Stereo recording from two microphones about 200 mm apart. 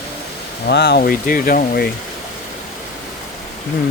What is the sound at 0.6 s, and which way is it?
Speech, 55° left (ahead or behind).